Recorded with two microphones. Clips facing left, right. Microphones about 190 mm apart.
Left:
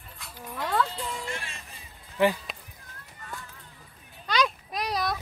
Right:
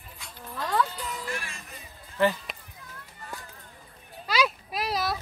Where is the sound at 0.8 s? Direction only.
25° left (ahead or behind).